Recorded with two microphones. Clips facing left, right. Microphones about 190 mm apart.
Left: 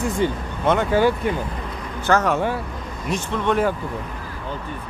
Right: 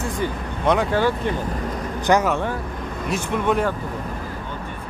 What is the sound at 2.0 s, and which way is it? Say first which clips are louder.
Vehicle: right 1 dB; 15° right (ahead or behind).